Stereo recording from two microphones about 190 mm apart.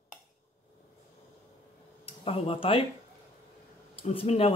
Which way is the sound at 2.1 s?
30° left (ahead or behind).